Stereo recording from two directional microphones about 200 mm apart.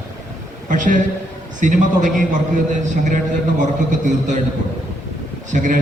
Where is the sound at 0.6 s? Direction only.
40° right (ahead or behind).